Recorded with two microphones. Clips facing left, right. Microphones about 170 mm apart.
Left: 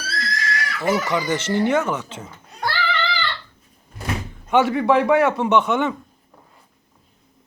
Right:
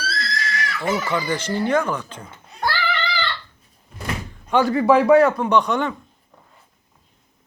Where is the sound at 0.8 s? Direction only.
10° left (ahead or behind).